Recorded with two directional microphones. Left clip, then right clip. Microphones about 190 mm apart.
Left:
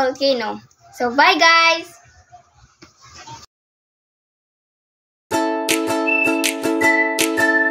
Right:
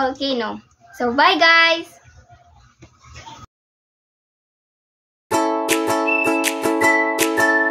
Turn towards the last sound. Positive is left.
turn(degrees=0)  # may be behind; listen again after turning